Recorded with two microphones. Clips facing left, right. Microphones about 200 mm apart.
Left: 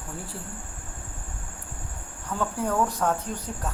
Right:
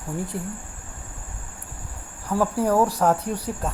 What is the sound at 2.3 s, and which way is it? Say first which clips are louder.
Speech: right 6 dB; 35° right (ahead or behind).